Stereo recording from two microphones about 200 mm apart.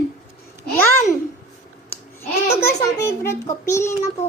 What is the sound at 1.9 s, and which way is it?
A child's voice, 15° left (ahead or behind).